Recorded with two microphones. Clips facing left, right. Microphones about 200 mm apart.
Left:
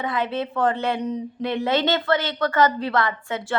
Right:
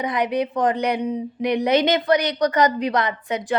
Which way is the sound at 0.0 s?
15° right (ahead or behind).